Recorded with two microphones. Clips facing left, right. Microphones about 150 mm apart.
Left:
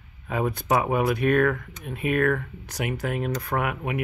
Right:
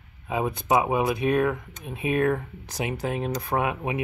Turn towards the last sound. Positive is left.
turn(degrees=-25)  # may be behind; listen again after turning